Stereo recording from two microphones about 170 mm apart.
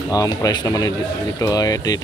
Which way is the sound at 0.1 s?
20° left (ahead or behind).